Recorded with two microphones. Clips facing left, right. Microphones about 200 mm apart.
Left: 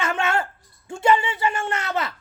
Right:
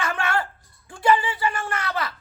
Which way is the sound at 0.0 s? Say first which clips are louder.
Left 2 dB; 25° left (ahead or behind).